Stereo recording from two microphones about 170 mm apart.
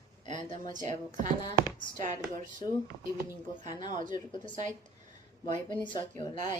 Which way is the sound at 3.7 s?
25° left (ahead or behind).